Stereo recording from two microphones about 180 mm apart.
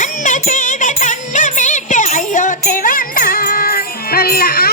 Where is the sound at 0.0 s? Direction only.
45° left (ahead or behind).